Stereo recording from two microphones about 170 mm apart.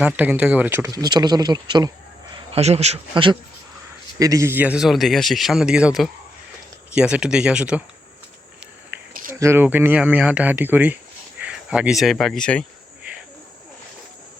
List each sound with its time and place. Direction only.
0.0 s speech: 5° right (ahead or behind); by 1.9 s 25° right (ahead or behind)
2.5 s speech: 40° right (ahead or behind)
4.2 s speech: 20° right (ahead or behind)
8.9 s a sound: 10° right (ahead or behind)
9.3 s speech: 15° right (ahead or behind); by 12.6 s 5° left (ahead or behind)